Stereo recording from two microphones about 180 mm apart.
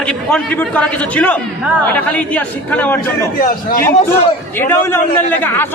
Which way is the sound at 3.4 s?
55° left (ahead or behind).